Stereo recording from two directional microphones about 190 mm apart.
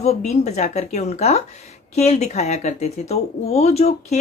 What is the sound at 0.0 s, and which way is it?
A woman's voice, 35° left (ahead or behind).